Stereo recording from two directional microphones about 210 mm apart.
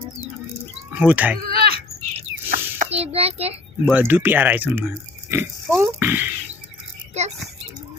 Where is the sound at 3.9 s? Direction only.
10° right (ahead or behind).